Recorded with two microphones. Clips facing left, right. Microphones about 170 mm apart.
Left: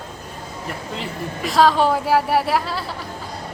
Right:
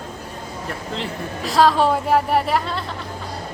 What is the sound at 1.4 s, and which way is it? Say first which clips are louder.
A woman's voice: even; centre (ahead or behind).